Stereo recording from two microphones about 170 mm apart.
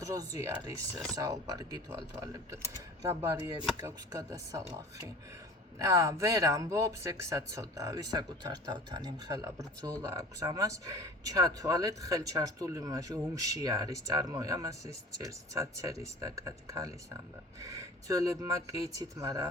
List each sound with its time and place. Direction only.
0.0 s speech: 20° right (ahead or behind)
0.5 s speech: 10° right (ahead or behind)
1.1 s speech: 20° right (ahead or behind)
5.8 s speech: 15° right (ahead or behind)